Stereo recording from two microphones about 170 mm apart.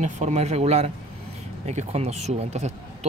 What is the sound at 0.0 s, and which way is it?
Speech, 45° right (ahead or behind).